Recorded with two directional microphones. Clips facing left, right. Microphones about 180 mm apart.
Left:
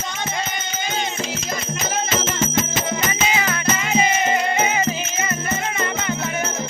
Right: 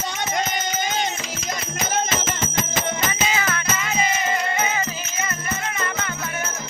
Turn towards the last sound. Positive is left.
turn(degrees=25)  # may be behind; listen again after turning